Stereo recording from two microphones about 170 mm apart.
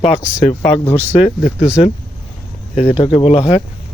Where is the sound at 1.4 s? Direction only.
45° left (ahead or behind).